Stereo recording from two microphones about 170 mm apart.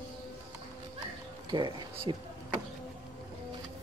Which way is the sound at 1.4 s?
25° right (ahead or behind).